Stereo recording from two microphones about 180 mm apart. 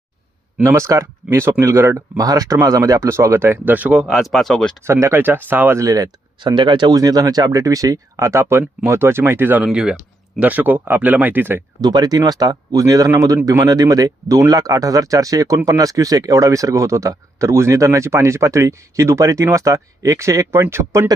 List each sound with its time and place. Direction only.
0.6 s speech: 15° right (ahead or behind); by 4.8 s 5° left (ahead or behind)
4.9 s speech: 15° right (ahead or behind)